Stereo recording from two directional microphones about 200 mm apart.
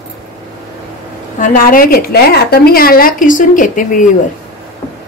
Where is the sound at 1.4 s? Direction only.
45° left (ahead or behind).